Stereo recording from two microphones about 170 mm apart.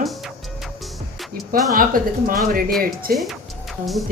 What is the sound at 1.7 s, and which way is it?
Speech, 55° right (ahead or behind).